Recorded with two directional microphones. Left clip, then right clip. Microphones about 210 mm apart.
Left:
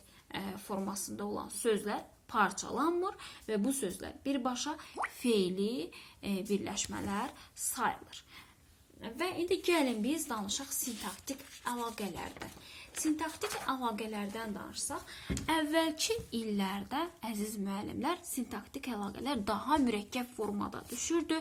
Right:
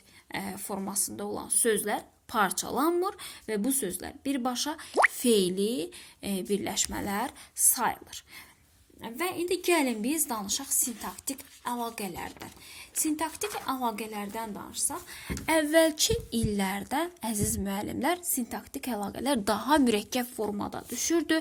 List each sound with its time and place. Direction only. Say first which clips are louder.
0.3 s speech: right 5 dB; 35° right (ahead or behind)
13.7 s speech: right 4 dB; 35° right (ahead or behind)